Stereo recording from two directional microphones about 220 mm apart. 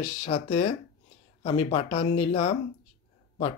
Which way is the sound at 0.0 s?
25° left (ahead or behind).